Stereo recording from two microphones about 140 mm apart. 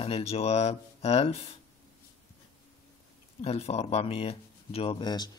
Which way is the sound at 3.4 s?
45° left (ahead or behind).